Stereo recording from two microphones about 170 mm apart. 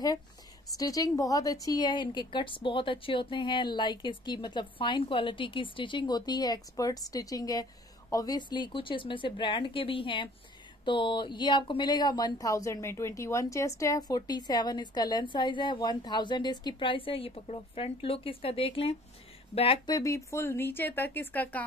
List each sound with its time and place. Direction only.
0.7 s speech: 20° left (ahead or behind)
20.0 s speech: 15° left (ahead or behind)